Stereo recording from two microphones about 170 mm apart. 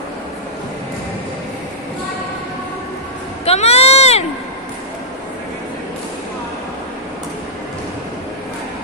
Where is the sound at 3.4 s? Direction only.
35° left (ahead or behind).